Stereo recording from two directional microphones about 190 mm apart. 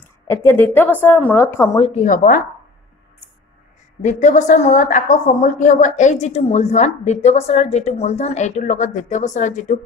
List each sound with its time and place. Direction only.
0.0 s a woman's voice: 10° left (ahead or behind)
1.8 s a woman's voice: 40° left (ahead or behind)
4.0 s a woman's voice: 40° left (ahead or behind)